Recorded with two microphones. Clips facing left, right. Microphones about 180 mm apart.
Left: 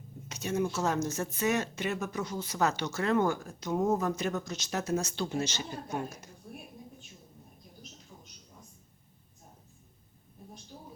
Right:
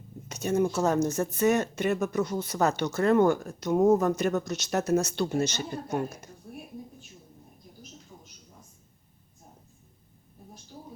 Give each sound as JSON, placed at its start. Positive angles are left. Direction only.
{"t": 0.3, "sound": "speech", "side_deg": -50}
{"t": 1.0, "sound": "speech", "side_deg": -55}
{"t": 2.6, "sound": "speech", "side_deg": -40}
{"t": 2.9, "sound": "speech", "side_deg": -50}
{"t": 3.8, "sound": "speech", "side_deg": -45}
{"t": 4.4, "sound": "speech", "side_deg": -65}